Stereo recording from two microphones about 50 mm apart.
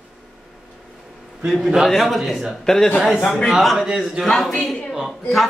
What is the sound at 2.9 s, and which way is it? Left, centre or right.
Speech, centre.